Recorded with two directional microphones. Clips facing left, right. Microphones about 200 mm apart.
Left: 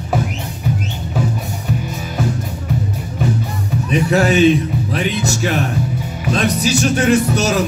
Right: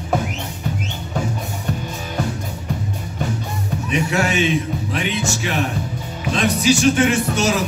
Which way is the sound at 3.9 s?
35° left (ahead or behind).